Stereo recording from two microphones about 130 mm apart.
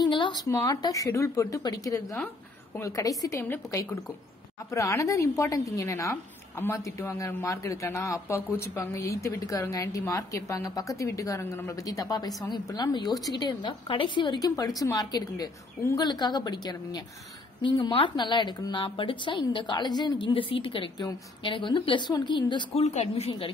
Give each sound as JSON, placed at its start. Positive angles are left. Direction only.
{"t": 0.1, "sound": "a sound", "side_deg": 35}
{"t": 0.5, "sound": "a man's voice", "side_deg": 25}
{"t": 22.8, "sound": "speech", "side_deg": 55}